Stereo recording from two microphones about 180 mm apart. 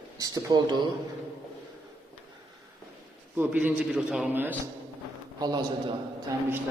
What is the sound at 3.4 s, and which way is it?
A man's voice, 10° right (ahead or behind).